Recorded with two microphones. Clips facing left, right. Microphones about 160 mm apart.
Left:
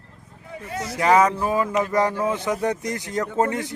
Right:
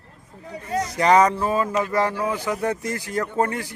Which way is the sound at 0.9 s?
5° left (ahead or behind).